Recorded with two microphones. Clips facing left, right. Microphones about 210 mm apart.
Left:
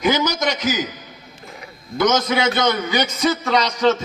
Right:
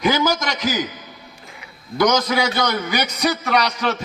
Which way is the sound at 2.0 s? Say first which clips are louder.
Even; 25° left (ahead or behind).